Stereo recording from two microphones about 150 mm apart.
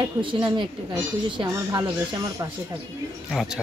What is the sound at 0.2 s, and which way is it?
Speech, 35° right (ahead or behind).